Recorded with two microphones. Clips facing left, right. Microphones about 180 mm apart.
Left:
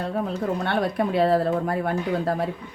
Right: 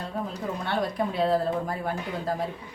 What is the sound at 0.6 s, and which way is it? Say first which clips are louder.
A woman's voice: left 1 dB; 65° left (ahead or behind).